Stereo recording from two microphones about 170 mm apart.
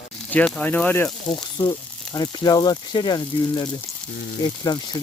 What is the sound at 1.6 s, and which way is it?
Speech, 25° left (ahead or behind).